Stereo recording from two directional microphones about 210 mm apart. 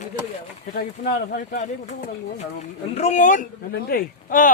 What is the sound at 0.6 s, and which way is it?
Speech, 35° left (ahead or behind).